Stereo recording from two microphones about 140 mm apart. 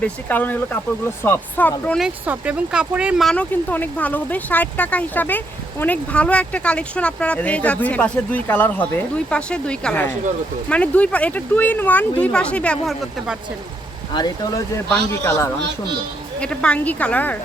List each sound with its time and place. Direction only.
0.0 s speech: 10° left (ahead or behind)
2.0 s speech: 10° right (ahead or behind)
3.2 s speech: 10° left (ahead or behind)
14.1 s speech: 30° left (ahead or behind)
14.8 s speech: 15° left (ahead or behind)